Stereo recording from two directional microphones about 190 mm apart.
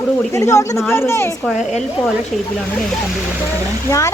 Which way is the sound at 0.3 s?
15° left (ahead or behind).